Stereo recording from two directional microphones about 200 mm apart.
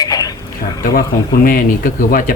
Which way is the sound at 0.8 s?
45° left (ahead or behind).